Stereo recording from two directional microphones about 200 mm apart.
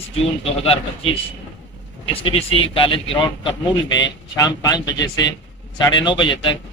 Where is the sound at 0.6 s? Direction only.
30° left (ahead or behind).